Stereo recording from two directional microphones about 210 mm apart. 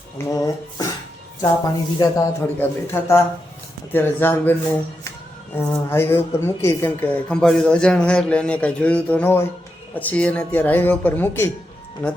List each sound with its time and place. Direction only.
0.3 s a woman's voice: 15° left (ahead or behind)
5.5 s a woman's voice: 10° left (ahead or behind)